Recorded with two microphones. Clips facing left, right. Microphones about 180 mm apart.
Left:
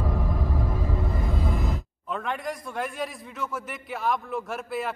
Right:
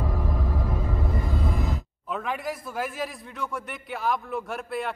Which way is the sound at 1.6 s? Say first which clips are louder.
Even; centre (ahead or behind).